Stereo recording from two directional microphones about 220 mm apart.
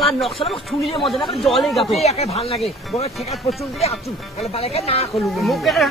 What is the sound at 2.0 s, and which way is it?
Speech, 30° left (ahead or behind).